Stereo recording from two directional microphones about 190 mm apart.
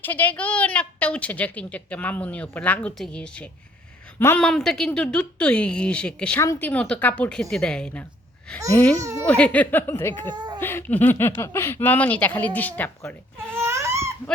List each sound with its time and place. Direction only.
0.0 s a woman's voice: 10° left (ahead or behind)
9.0 s speech: 15° right (ahead or behind)
9.2 s a woman's voice: 5° left (ahead or behind)
10.3 s a sound: 20° right (ahead or behind)
10.6 s a woman's voice: 10° left (ahead or behind)
13.6 s crying: 15° right (ahead or behind)